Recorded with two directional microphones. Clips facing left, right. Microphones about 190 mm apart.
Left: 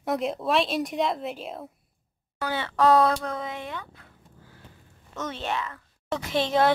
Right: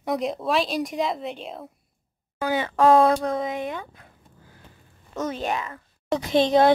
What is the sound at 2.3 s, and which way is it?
A woman's voice, 15° right (ahead or behind).